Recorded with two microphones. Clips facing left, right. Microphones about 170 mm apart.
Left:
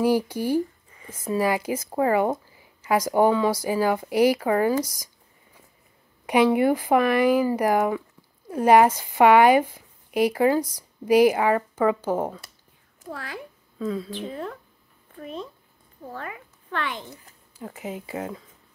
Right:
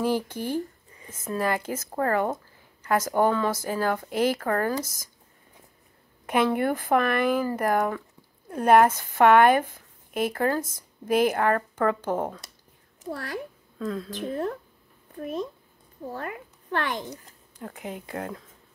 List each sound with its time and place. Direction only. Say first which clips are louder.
0.0 s speech: left 4 dB; 10° left (ahead or behind)
6.2 s speech: left 4 dB; 10° left (ahead or behind)
13.7 s speech: left 2 dB; centre (ahead or behind)
14.3 s speech: right 4 dB; 45° right (ahead or behind)
17.6 s speech: left 2 dB; 5° left (ahead or behind)